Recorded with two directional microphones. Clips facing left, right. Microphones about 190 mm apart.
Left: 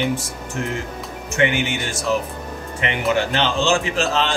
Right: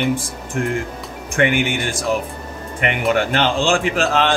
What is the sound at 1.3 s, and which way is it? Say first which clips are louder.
Speech: right 2 dB; 55° right (ahead or behind).